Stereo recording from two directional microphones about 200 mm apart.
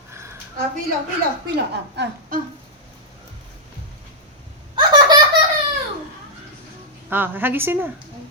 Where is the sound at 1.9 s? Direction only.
55° right (ahead or behind).